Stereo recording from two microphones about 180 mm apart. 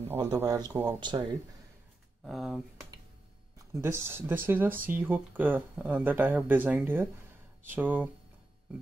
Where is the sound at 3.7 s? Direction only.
15° right (ahead or behind).